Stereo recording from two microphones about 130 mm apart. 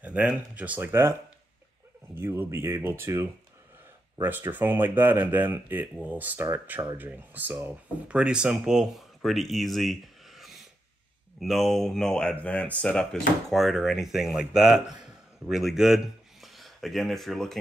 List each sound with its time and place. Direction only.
0.0 s speech: 10° right (ahead or behind)
2.1 s speech: 20° right (ahead or behind); by 17.6 s centre (ahead or behind)